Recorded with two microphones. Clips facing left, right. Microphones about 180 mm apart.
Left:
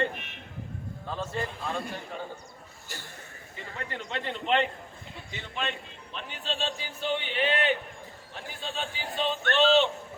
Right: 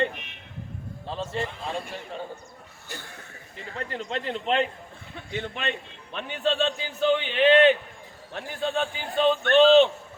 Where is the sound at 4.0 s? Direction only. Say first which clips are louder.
Right 4 dB; 35° right (ahead or behind).